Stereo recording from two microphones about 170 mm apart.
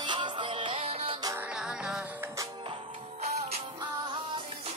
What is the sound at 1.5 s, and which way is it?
Music, 5° right (ahead or behind).